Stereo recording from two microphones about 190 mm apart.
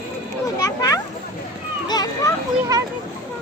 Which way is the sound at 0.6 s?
20° left (ahead or behind).